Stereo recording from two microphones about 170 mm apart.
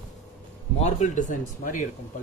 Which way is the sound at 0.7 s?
40° left (ahead or behind).